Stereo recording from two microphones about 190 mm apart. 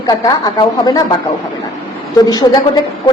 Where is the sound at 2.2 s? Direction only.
20° left (ahead or behind).